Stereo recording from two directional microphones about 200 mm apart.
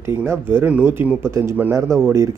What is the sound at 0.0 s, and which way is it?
Speech, 10° right (ahead or behind).